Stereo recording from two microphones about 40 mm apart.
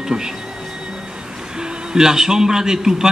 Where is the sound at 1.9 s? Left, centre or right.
Centre.